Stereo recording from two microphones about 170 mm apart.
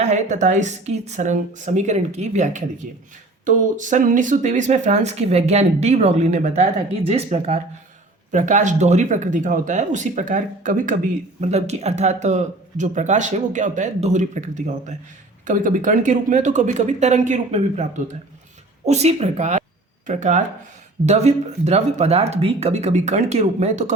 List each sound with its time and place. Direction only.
0.0 s speech: 45° right (ahead or behind)